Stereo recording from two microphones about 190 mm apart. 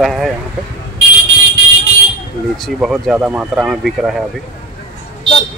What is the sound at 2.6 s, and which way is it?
Speech, centre (ahead or behind).